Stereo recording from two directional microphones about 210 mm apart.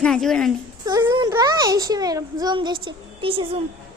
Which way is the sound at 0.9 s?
15° right (ahead or behind).